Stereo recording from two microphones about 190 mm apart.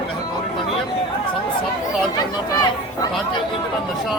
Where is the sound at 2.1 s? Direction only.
20° left (ahead or behind).